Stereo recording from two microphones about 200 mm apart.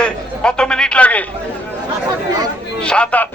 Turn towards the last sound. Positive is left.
turn(degrees=5)  # may be behind; listen again after turning